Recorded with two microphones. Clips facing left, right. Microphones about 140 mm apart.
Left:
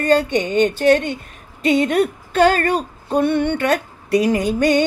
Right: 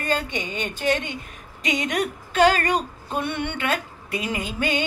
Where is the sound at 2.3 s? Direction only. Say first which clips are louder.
Left 3 dB; 45° left (ahead or behind).